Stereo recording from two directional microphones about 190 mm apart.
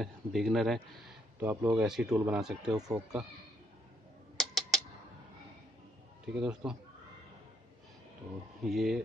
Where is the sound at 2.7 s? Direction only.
20° right (ahead or behind).